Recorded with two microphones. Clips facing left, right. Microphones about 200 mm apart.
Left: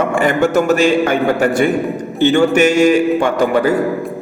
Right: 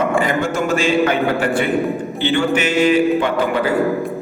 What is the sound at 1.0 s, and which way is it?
Music, 45° left (ahead or behind).